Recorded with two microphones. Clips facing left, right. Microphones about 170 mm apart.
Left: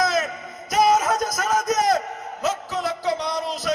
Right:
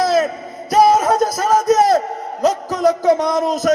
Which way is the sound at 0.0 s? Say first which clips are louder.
Right 7 dB; 30° right (ahead or behind).